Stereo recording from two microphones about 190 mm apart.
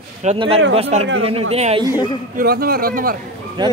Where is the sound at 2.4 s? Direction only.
55° right (ahead or behind).